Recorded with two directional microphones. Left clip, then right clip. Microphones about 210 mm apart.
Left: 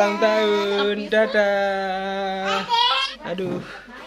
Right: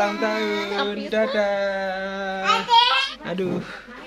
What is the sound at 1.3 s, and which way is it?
Speech, 35° left (ahead or behind).